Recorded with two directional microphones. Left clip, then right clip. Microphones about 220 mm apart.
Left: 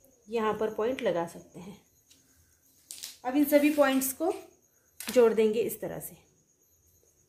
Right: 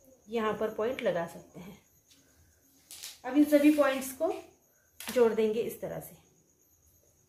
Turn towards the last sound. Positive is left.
turn(degrees=45)  # may be behind; listen again after turning